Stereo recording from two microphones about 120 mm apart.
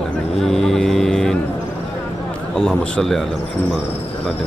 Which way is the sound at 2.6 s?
5° left (ahead or behind).